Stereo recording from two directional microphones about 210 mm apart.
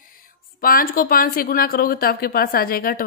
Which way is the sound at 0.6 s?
45° left (ahead or behind).